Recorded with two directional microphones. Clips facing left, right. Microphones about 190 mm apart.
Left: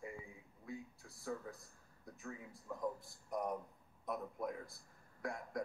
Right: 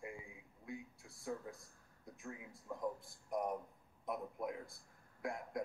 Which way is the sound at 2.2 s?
5° right (ahead or behind).